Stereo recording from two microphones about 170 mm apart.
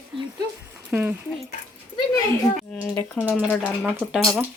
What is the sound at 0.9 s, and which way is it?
Speech, 10° right (ahead or behind).